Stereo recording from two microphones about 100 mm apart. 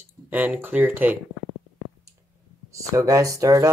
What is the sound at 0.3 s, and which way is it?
Speech, 15° right (ahead or behind).